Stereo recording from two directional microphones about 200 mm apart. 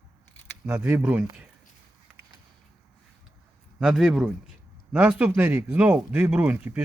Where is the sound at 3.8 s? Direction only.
Centre (ahead or behind).